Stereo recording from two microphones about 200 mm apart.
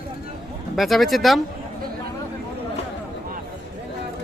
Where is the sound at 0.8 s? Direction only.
Centre (ahead or behind).